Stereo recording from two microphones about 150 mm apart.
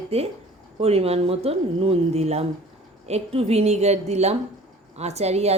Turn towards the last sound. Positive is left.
turn(degrees=-45)  # may be behind; listen again after turning